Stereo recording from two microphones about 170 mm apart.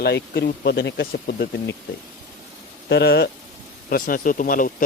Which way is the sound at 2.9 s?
75° left (ahead or behind).